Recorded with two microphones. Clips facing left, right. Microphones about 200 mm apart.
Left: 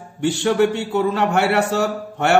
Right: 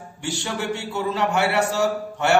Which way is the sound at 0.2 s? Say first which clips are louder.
Left 11 dB; 55° left (ahead or behind).